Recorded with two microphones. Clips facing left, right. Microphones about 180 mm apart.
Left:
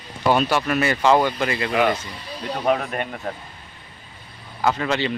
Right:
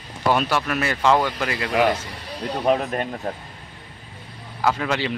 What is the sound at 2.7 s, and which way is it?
Speech, 30° right (ahead or behind).